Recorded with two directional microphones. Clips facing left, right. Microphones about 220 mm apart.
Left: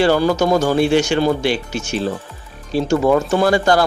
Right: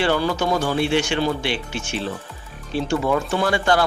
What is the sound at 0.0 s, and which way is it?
A woman's voice, 40° left (ahead or behind).